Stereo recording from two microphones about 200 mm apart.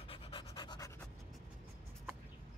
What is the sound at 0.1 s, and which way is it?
Pant, 25° left (ahead or behind).